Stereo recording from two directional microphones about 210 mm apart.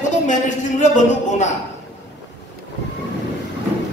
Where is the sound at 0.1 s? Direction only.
35° left (ahead or behind).